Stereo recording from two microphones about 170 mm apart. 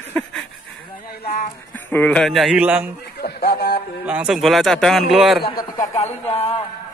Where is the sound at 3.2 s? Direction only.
70° left (ahead or behind).